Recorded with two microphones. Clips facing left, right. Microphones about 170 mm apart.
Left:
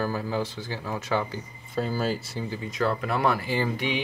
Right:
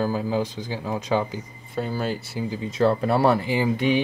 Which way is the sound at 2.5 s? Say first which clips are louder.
Right 6 dB; 25° right (ahead or behind).